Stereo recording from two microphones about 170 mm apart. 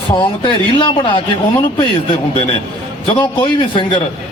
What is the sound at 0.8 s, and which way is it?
Speech, 25° left (ahead or behind).